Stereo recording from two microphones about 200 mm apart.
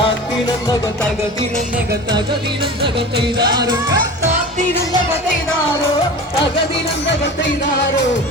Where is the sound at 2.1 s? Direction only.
25° right (ahead or behind).